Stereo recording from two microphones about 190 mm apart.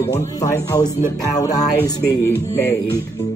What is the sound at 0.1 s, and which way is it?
A man's voice, 15° left (ahead or behind).